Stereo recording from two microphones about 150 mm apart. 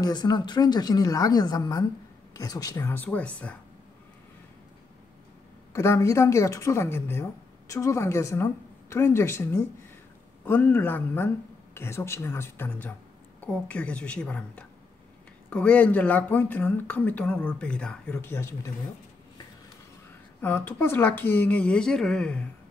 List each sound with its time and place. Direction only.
0.0 s speech: 25° left (ahead or behind); by 3.5 s 10° left (ahead or behind)
5.7 s speech: 20° left (ahead or behind)
20.4 s speech: 15° left (ahead or behind)